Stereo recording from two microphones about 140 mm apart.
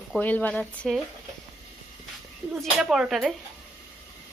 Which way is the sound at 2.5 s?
Centre (ahead or behind).